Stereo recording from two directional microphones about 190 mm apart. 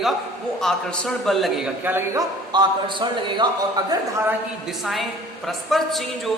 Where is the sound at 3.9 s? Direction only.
15° right (ahead or behind).